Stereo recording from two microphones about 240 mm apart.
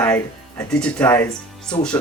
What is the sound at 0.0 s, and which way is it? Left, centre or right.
Speech, centre.